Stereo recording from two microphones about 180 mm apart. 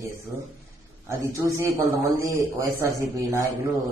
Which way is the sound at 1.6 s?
15° right (ahead or behind).